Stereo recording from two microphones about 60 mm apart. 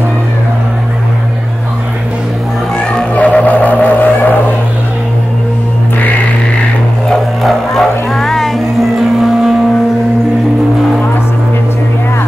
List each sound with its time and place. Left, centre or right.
3.2 s music: left
7.1 s music: centre